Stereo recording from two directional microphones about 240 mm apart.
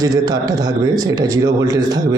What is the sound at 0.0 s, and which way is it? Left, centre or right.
Speech, centre.